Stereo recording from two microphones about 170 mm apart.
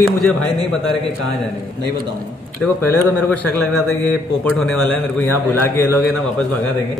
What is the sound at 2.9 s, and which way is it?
Speech, 10° left (ahead or behind).